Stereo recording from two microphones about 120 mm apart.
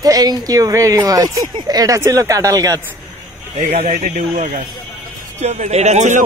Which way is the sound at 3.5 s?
65° right (ahead or behind).